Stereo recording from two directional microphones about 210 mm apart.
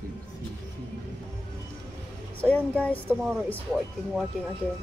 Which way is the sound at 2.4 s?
5° left (ahead or behind).